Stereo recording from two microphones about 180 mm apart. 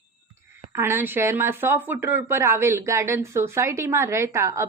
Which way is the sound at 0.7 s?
15° right (ahead or behind).